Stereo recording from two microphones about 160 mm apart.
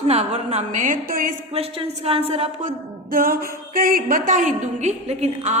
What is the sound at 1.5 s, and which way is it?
A woman's voice, 40° right (ahead or behind).